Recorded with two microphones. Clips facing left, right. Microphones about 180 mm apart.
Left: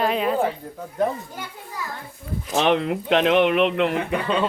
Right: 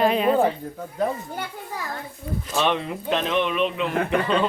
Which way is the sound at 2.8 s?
75° left (ahead or behind).